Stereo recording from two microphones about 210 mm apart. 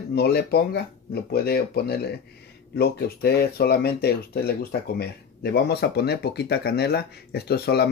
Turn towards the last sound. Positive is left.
turn(degrees=50)  # may be behind; listen again after turning